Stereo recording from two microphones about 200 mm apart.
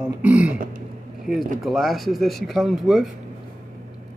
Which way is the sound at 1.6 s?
Centre (ahead or behind).